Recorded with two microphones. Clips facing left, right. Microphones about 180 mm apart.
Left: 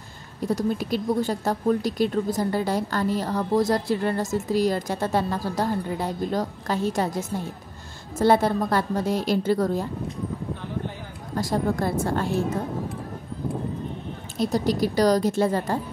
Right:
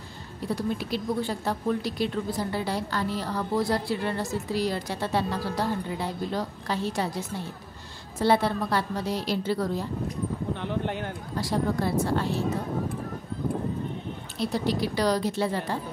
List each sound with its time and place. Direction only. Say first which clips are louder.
0.4 s speech: left 4 dB; 45° left (ahead or behind)
10.5 s a sound: right 2 dB; 75° right (ahead or behind)
11.3 s speech: left 3 dB; 45° left (ahead or behind)
14.4 s speech: left 4 dB; 45° left (ahead or behind)